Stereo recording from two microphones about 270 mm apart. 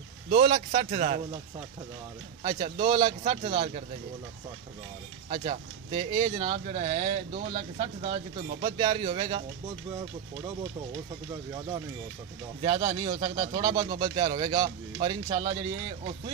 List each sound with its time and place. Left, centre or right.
0.3 s speech: right
2.4 s speech: centre
5.3 s speech: centre
12.6 s speech: centre